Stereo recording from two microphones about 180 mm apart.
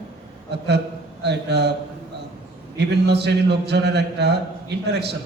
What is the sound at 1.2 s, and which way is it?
Speech, 70° right (ahead or behind).